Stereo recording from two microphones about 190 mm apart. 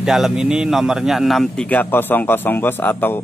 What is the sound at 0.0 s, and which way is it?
A man's voice, centre (ahead or behind).